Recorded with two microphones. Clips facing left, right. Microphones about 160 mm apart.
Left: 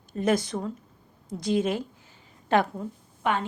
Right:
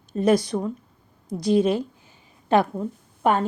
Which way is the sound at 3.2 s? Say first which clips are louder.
Right 6 dB; 40° right (ahead or behind).